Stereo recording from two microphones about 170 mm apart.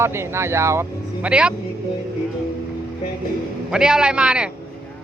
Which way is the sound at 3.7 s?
5° right (ahead or behind).